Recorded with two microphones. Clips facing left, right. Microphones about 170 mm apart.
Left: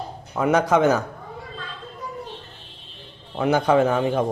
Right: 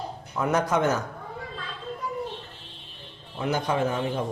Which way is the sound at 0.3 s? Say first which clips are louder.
Left 5 dB; 90° left.